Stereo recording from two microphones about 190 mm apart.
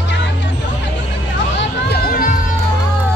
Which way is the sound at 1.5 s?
55° left (ahead or behind).